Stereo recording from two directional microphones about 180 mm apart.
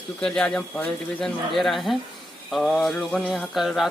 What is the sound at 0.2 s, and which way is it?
Speech, 5° left (ahead or behind).